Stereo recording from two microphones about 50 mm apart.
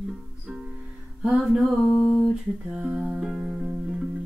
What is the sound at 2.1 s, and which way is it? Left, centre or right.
Music, centre.